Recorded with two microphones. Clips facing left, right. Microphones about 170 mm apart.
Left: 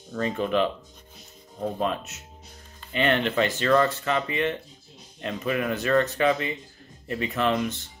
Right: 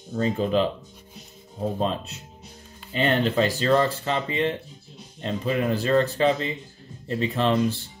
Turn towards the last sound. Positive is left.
turn(degrees=-30)  # may be behind; listen again after turning